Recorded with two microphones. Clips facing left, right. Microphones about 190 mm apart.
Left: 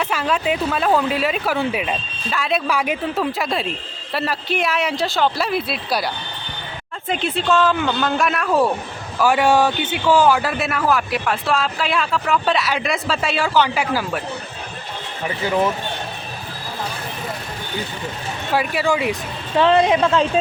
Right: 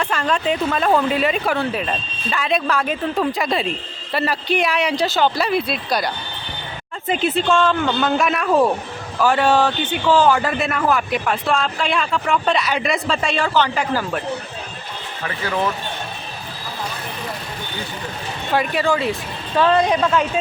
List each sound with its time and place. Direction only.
0.0 s speech: 5° left (ahead or behind)
7.1 s speech: centre (ahead or behind)
9.2 s speech: 10° left (ahead or behind)
15.2 s speech: 15° left (ahead or behind)
18.5 s speech: 5° left (ahead or behind)
19.5 s speech: 25° left (ahead or behind)